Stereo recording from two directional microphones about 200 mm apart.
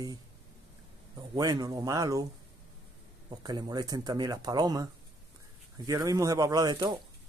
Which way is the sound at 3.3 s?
20° right (ahead or behind).